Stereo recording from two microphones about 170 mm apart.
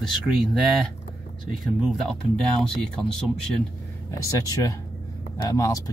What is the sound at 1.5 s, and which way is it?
Speech, centre (ahead or behind).